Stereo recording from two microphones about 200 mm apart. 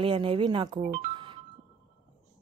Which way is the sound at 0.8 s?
40° right (ahead or behind).